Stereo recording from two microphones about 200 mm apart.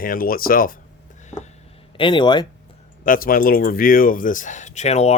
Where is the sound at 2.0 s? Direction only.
25° left (ahead or behind).